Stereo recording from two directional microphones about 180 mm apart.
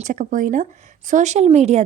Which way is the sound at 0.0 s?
45° right (ahead or behind).